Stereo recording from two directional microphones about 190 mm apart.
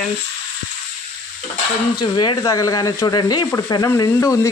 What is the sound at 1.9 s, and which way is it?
Speech, 25° left (ahead or behind).